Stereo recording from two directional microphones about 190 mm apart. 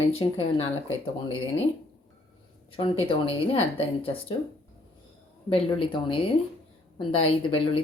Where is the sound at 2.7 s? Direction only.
30° left (ahead or behind).